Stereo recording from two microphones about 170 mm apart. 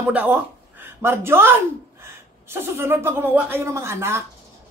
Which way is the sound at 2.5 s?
15° right (ahead or behind).